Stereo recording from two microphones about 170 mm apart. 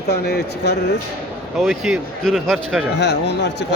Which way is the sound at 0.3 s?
70° left (ahead or behind).